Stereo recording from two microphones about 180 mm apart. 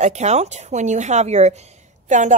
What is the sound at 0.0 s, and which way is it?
A woman's voice, 40° right (ahead or behind).